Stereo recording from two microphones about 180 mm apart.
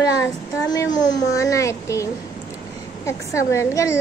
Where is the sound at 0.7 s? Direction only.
20° left (ahead or behind).